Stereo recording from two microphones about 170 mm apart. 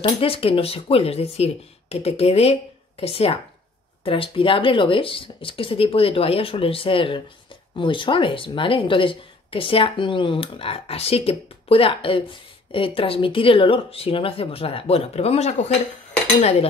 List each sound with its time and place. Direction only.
0.0 s speech: 35° left (ahead or behind)